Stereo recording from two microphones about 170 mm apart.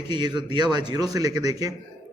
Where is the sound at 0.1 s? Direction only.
25° right (ahead or behind).